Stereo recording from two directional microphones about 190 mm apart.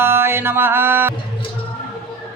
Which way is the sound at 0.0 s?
15° right (ahead or behind).